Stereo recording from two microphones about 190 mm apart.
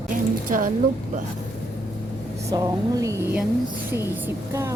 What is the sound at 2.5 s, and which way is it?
Speech, 15° right (ahead or behind).